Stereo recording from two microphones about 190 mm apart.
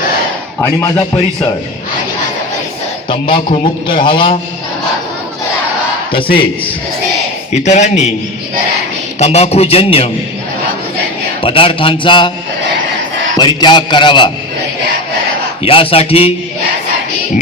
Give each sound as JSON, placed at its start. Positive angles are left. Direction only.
{"t": 0.6, "sound": "a man's voice", "side_deg": 20}
{"t": 3.1, "sound": "a man's voice", "side_deg": 25}
{"t": 6.2, "sound": "a man's voice", "side_deg": 50}
{"t": 7.5, "sound": "a man's voice", "side_deg": 35}
{"t": 9.1, "sound": "a man's voice", "side_deg": 35}
{"t": 11.4, "sound": "a man's voice", "side_deg": 30}
{"t": 13.3, "sound": "a man's voice", "side_deg": 25}
{"t": 15.6, "sound": "a man's voice", "side_deg": 30}